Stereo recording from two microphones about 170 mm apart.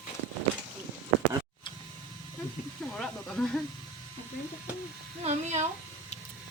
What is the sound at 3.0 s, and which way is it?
Speech, 5° left (ahead or behind).